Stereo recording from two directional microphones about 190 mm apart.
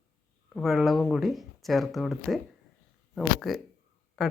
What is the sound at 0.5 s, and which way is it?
Speech, centre (ahead or behind).